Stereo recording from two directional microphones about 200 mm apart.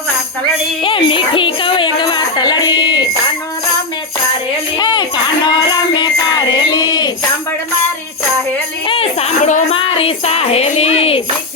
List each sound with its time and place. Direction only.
0.9 s music: 25° left (ahead or behind)
4.8 s a sound: 20° left (ahead or behind)
6.0 s jingle bell: 20° left (ahead or behind)
9.5 s music: 35° left (ahead or behind)